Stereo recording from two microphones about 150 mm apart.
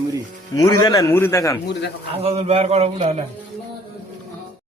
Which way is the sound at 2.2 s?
40° right (ahead or behind).